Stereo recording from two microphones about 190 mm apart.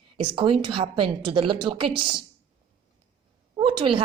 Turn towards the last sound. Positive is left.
turn(degrees=-25)  # may be behind; listen again after turning